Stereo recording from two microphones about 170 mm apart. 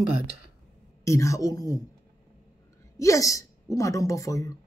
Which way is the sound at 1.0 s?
15° left (ahead or behind).